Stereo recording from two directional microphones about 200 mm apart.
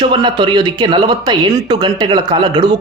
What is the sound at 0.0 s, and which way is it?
A man's voice, 25° right (ahead or behind).